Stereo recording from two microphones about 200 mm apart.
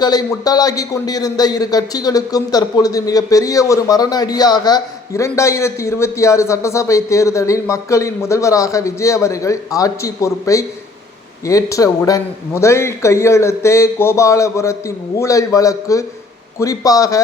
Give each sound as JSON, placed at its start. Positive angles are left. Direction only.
{"t": 0.0, "sound": "a man's voice", "side_deg": 20}